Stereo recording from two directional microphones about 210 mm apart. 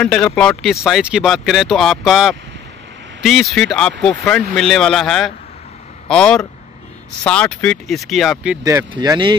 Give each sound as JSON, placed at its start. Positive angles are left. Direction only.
{"t": 0.0, "sound": "speech", "side_deg": 5}
{"t": 8.6, "sound": "speech", "side_deg": -15}